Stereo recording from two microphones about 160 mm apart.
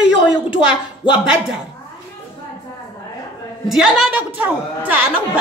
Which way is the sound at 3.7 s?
5° right (ahead or behind).